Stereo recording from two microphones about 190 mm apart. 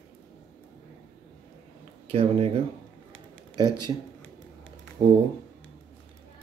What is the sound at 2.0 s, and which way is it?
Speech, 30° right (ahead or behind).